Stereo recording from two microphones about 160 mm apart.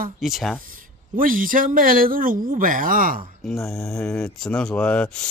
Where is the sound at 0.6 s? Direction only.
60° right (ahead or behind).